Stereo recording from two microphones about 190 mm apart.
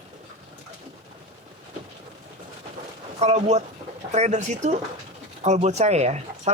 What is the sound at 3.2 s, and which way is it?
A woman's voice, 35° right (ahead or behind).